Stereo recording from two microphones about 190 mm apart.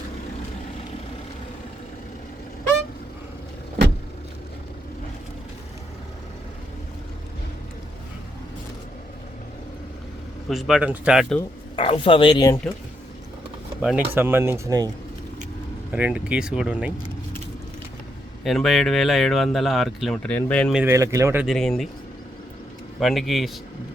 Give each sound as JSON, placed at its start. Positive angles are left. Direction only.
{"t": 10.5, "sound": "speech", "side_deg": 0}
{"t": 11.8, "sound": "speech", "side_deg": 30}
{"t": 13.8, "sound": "speech", "side_deg": -10}
{"t": 15.9, "sound": "speech", "side_deg": -5}
{"t": 18.4, "sound": "speech", "side_deg": 0}
{"t": 20.7, "sound": "speech", "side_deg": -15}
{"t": 21.4, "sound": "speech", "side_deg": 0}
{"t": 23.0, "sound": "speech", "side_deg": 0}